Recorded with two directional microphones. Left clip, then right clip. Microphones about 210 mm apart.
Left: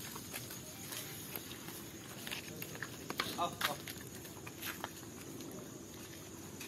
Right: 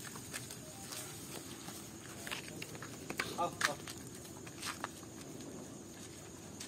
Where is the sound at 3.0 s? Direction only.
50° right (ahead or behind).